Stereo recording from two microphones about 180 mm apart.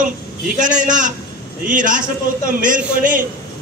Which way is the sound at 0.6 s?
45° right (ahead or behind).